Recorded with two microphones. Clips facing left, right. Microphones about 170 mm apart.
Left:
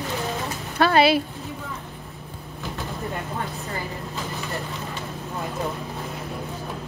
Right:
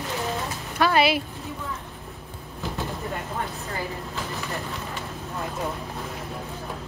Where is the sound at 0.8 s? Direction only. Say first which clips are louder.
Left 3 dB; 30° left (ahead or behind).